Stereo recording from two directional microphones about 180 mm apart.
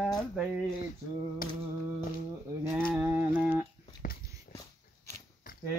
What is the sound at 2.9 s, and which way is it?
Mantra, 10° right (ahead or behind).